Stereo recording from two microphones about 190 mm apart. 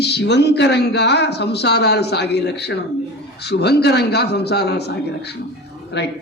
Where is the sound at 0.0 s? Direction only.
60° left (ahead or behind).